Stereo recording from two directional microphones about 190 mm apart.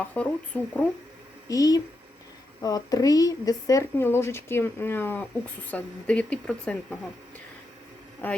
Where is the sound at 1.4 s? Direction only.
20° left (ahead or behind).